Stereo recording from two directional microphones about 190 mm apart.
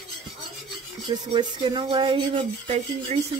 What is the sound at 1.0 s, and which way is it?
Speech, 25° right (ahead or behind).